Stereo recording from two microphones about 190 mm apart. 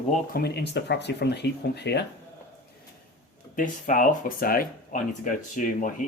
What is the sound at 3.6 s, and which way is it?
Speech, 45° left (ahead or behind).